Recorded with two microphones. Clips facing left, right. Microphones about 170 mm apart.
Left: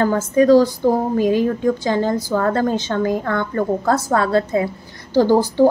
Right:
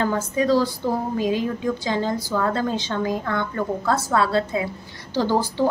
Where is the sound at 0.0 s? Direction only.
50° left (ahead or behind).